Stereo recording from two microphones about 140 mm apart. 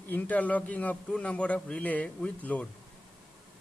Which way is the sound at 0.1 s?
10° left (ahead or behind).